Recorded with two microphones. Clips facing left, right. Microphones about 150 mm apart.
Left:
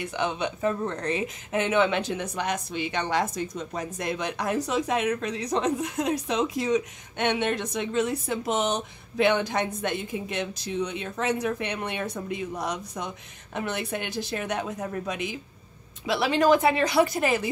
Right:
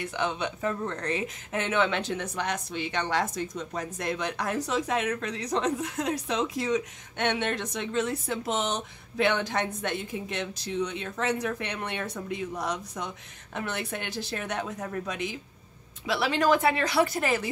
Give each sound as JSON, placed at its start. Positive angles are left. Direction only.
{"t": 0.0, "sound": "speech", "side_deg": 15}